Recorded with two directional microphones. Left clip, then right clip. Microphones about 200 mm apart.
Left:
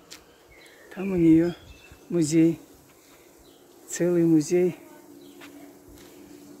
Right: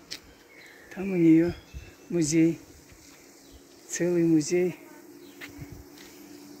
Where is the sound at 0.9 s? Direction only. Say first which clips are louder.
Left 1 dB; 5° left (ahead or behind).